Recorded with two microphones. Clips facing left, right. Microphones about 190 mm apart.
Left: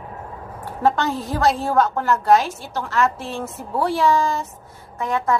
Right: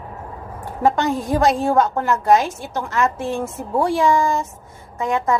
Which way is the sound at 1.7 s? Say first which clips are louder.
Right 1 dB; 20° right (ahead or behind).